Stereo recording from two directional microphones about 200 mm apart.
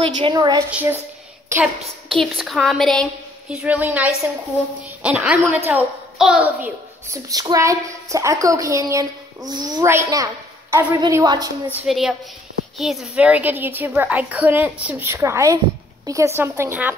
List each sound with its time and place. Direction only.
0.0 s a woman's voice: 20° right (ahead or behind)
0.7 s a child's voice: 5° right (ahead or behind)
2.0 s a woman's voice: centre (ahead or behind); by 11.8 s 20° right (ahead or behind)
11.8 s a woman's voice: centre (ahead or behind)